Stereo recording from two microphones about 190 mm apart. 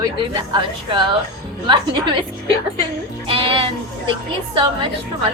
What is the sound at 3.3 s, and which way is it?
Music, 30° right (ahead or behind).